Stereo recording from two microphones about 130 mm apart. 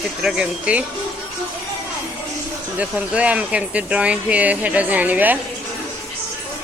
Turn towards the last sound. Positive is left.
turn(degrees=-10)  # may be behind; listen again after turning